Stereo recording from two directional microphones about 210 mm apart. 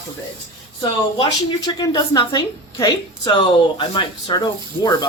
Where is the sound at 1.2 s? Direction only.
20° left (ahead or behind).